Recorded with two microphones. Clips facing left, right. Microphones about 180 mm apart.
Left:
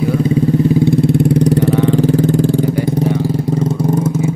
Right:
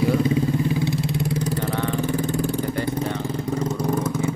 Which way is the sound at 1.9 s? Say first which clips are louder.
Left 11 dB; 90° left.